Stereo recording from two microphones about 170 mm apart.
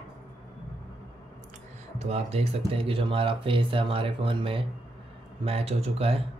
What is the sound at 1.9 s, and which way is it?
Speech, 40° right (ahead or behind).